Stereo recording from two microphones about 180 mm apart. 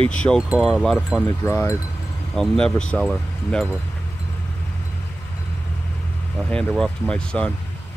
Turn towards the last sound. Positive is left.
turn(degrees=5)  # may be behind; listen again after turning